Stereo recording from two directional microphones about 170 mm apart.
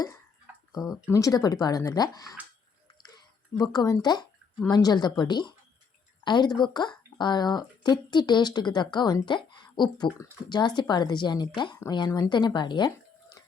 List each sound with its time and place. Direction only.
0.7 s speech: 20° left (ahead or behind)